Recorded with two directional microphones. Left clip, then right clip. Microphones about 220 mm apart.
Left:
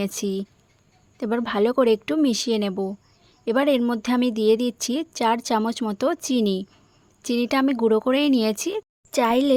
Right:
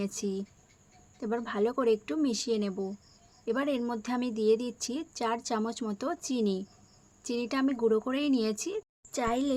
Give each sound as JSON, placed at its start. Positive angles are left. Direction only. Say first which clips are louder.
{"t": 0.0, "sound": "speech", "louder": "left 8 dB", "side_deg": 45}